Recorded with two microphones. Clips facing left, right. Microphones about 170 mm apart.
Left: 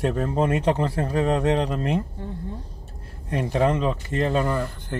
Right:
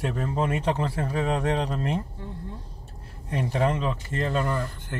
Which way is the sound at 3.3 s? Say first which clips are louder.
Left 3 dB; 30° left (ahead or behind).